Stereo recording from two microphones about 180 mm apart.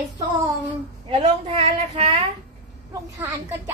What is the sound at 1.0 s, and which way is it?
A woman's voice, 35° right (ahead or behind).